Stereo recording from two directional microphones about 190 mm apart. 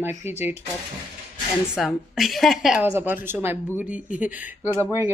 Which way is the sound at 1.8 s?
Centre (ahead or behind).